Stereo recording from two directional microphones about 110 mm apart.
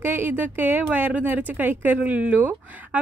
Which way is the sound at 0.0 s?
20° right (ahead or behind).